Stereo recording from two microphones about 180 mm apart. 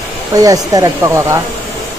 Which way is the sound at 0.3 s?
20° right (ahead or behind).